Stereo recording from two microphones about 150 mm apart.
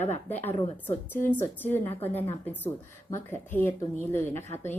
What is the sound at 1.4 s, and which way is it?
A woman's voice, 15° left (ahead or behind).